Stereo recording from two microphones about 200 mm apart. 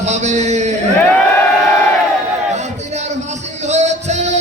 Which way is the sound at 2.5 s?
35° right (ahead or behind).